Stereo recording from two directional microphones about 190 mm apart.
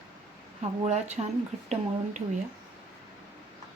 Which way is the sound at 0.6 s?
35° right (ahead or behind).